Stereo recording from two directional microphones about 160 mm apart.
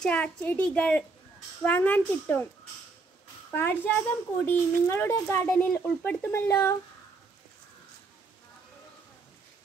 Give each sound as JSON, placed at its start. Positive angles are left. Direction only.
{"t": 0.0, "sound": "speech", "side_deg": 5}
{"t": 3.5, "sound": "speech", "side_deg": 10}